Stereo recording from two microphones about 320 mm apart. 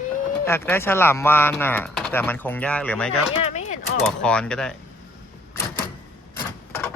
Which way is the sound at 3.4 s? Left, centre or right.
Left.